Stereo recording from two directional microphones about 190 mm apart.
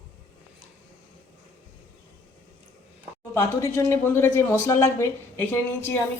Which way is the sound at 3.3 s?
15° left (ahead or behind).